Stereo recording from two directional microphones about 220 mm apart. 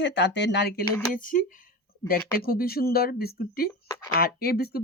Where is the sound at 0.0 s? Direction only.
50° left (ahead or behind).